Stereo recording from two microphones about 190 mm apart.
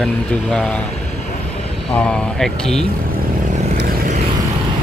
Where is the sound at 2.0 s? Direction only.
5° left (ahead or behind).